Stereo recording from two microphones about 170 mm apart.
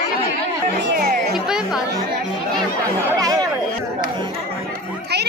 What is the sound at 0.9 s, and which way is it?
Music, 65° right (ahead or behind).